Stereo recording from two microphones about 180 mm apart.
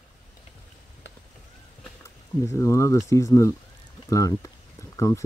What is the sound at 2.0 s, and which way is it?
Speech, 15° left (ahead or behind).